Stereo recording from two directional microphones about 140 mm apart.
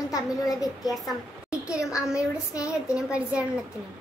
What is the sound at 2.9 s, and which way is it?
Speech, 10° right (ahead or behind).